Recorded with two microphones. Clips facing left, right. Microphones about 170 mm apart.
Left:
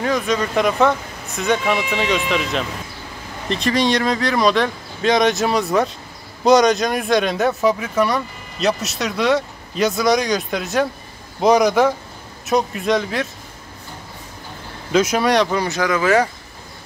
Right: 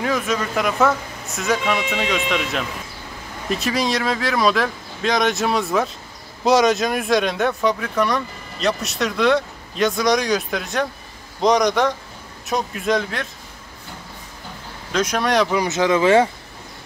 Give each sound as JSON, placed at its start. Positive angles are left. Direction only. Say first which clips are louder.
{"t": 0.0, "sound": "speech", "louder": "left 2 dB", "side_deg": 0}
{"t": 14.9, "sound": "speech", "louder": "left 4 dB", "side_deg": 5}
{"t": 15.5, "sound": "speech", "louder": "right 2 dB", "side_deg": -20}